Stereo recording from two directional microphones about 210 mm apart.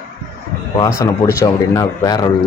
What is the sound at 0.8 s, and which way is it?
Speech, 15° left (ahead or behind).